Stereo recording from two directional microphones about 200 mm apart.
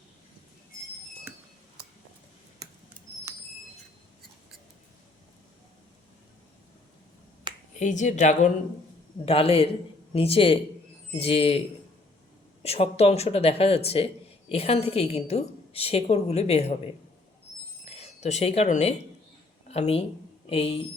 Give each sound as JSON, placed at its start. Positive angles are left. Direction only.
{"t": 7.5, "sound": "finger snapping", "side_deg": -25}
{"t": 7.8, "sound": "a woman's voice", "side_deg": 40}
{"t": 12.6, "sound": "a woman's voice", "side_deg": 30}